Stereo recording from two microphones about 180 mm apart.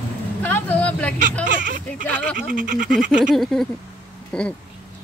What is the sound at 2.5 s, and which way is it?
Speech, 50° right (ahead or behind).